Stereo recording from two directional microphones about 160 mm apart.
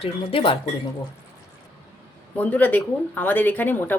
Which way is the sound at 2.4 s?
10° left (ahead or behind).